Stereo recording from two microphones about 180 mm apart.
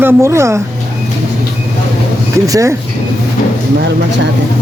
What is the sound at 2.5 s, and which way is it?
Speech, 15° right (ahead or behind).